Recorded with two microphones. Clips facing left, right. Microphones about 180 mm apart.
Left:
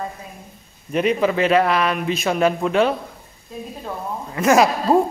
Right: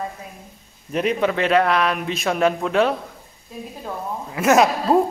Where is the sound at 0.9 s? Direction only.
Centre (ahead or behind).